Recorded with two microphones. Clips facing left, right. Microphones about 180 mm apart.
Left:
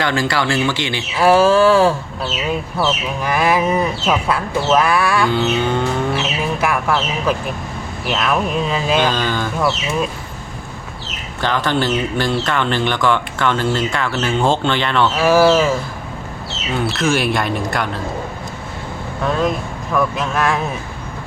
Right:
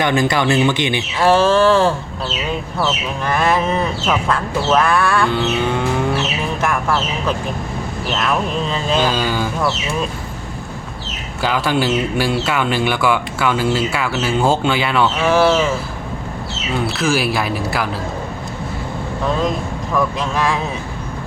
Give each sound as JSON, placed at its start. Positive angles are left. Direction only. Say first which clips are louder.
{"t": 0.0, "sound": "speech", "louder": "right 2 dB", "side_deg": -20}
{"t": 1.2, "sound": "speech", "louder": "left 1 dB", "side_deg": 10}
{"t": 9.0, "sound": "speech", "louder": "even", "side_deg": -10}
{"t": 11.4, "sound": "speech", "louder": "right 1 dB", "side_deg": -10}
{"t": 15.2, "sound": "speech", "louder": "left 3 dB", "side_deg": 5}
{"t": 16.8, "sound": "speech", "louder": "left 1 dB", "side_deg": 0}
{"t": 19.9, "sound": "speech", "louder": "left 1 dB", "side_deg": 0}